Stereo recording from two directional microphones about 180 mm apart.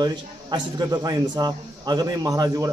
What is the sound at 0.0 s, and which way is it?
A man's voice, 25° right (ahead or behind).